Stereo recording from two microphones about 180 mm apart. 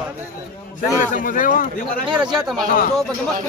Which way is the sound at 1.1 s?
50° left (ahead or behind).